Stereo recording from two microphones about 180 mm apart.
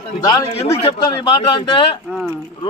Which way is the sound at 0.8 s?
35° left (ahead or behind).